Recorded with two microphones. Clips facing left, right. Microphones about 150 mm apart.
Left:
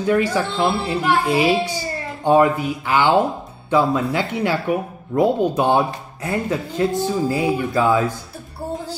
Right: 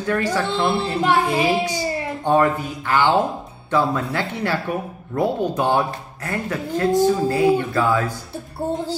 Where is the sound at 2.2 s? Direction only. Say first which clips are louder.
Left 3 dB; 15° left (ahead or behind).